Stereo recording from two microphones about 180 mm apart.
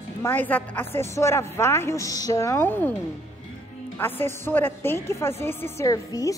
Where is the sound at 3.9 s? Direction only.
10° left (ahead or behind).